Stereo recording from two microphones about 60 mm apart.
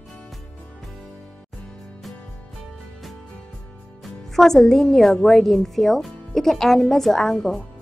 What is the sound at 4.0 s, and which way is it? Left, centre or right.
A woman's voice, centre.